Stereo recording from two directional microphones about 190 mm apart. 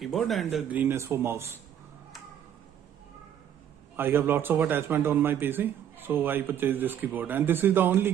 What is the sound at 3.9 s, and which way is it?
A man's voice, 10° right (ahead or behind).